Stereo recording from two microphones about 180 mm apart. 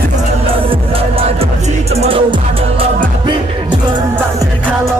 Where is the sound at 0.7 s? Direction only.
30° right (ahead or behind).